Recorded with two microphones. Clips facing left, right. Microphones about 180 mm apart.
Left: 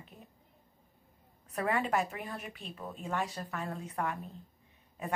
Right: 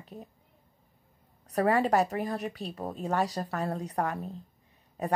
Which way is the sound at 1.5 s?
40° right (ahead or behind).